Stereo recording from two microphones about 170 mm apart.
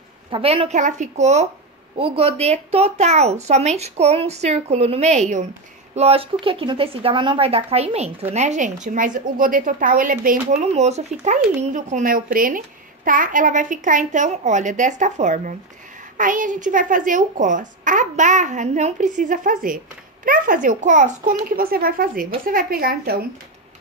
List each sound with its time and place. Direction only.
0.3 s a woman's voice: 35° right (ahead or behind); by 10.6 s 55° right (ahead or behind)
10.7 s a child's voice: 40° right (ahead or behind); by 23.2 s 65° right (ahead or behind)